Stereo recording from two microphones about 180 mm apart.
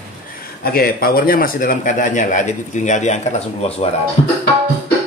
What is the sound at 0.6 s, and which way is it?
Speech, 55° left (ahead or behind).